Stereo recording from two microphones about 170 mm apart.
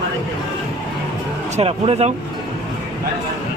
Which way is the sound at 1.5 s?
35° right (ahead or behind).